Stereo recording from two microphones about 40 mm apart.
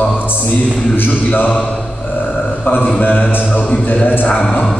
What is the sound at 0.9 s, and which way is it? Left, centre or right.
Speech, left.